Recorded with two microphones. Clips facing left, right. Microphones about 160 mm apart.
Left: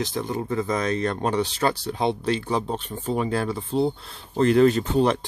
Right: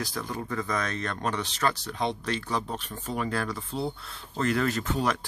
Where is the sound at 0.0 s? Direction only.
25° left (ahead or behind).